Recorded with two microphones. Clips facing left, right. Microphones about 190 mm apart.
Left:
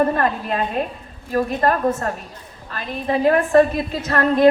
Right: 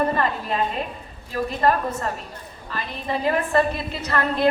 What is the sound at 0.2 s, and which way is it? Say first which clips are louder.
A woman's voice: left 2 dB; 55° left (ahead or behind).